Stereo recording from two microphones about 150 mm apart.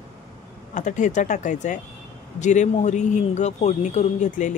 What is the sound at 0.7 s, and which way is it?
Speech, 55° left (ahead or behind).